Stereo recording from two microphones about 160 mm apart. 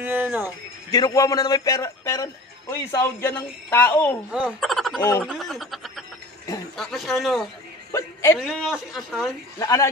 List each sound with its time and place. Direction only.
0.0 s speech: 10° right (ahead or behind)
0.9 s a man's voice: 25° left (ahead or behind)
4.3 s speech: 5° right (ahead or behind)
7.9 s a woman's voice: 15° left (ahead or behind)
8.4 s speech: centre (ahead or behind)
9.6 s a man's voice: 20° left (ahead or behind)